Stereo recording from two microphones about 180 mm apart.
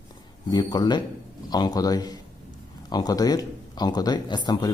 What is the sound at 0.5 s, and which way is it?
Speech, 25° left (ahead or behind).